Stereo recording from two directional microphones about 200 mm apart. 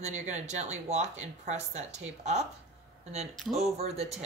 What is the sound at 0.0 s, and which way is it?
Speech, 35° right (ahead or behind).